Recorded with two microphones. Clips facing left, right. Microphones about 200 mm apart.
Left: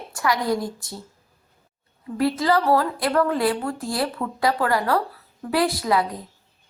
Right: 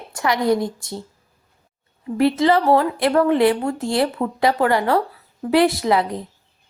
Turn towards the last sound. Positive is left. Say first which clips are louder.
# right 3 dB
turn(degrees=-25)  # may be behind; listen again after turning